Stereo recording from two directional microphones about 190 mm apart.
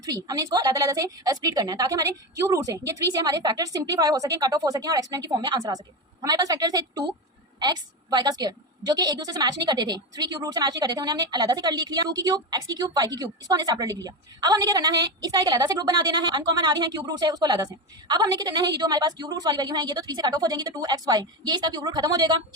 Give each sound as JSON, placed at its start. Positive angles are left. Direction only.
{"t": 0.0, "sound": "a woman's voice", "side_deg": -20}